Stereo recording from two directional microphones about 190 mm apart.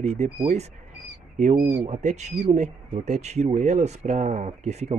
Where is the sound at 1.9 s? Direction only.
35° right (ahead or behind).